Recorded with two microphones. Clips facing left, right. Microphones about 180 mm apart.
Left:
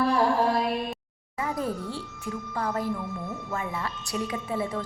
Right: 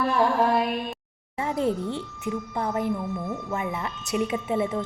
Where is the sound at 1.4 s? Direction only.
25° right (ahead or behind).